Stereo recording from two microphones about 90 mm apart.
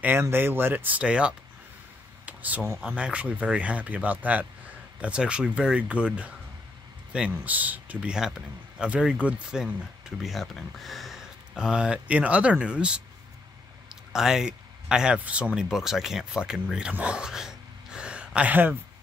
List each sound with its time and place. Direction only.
0.0 s speech: 25° right (ahead or behind)
2.2 s a sound: 15° right (ahead or behind)
3.0 s speech: 15° right (ahead or behind)
14.1 s speech: 5° right (ahead or behind)